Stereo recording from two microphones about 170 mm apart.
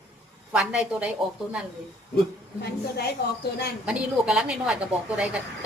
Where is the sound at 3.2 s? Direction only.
70° left (ahead or behind).